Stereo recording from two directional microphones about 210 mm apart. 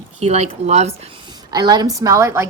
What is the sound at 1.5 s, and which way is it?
Speech, 20° right (ahead or behind).